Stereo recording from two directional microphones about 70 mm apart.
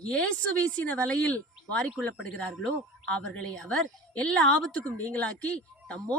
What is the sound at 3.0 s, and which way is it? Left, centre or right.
A woman's voice, centre.